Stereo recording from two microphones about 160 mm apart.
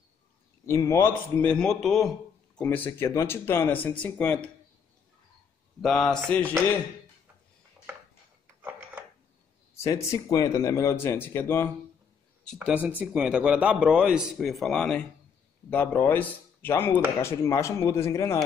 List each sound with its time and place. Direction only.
0.7 s speech: 15° left (ahead or behind)
5.8 s a man's voice: 5° left (ahead or behind)
8.6 s a sound: 10° right (ahead or behind)
9.8 s speech: 20° left (ahead or behind)
12.5 s a man's voice: 10° right (ahead or behind); by 18.4 s 15° left (ahead or behind)